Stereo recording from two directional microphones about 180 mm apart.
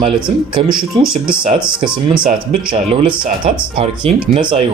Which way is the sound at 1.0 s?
30° right (ahead or behind).